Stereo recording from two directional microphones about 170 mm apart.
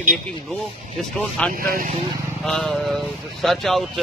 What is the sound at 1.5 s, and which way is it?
Speech, 55° right (ahead or behind).